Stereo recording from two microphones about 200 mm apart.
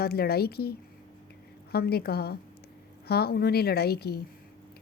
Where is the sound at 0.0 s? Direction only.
50° left (ahead or behind).